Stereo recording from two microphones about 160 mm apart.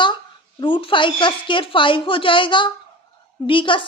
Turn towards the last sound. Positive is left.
turn(degrees=30)  # may be behind; listen again after turning